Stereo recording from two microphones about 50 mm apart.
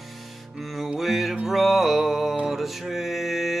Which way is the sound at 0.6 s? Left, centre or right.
Centre.